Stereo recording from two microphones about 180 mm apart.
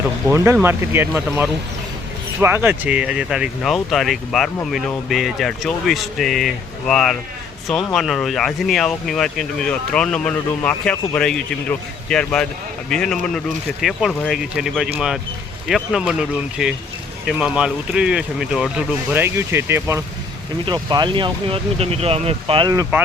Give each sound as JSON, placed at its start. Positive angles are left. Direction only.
{"t": 0.3, "sound": "speech", "side_deg": -15}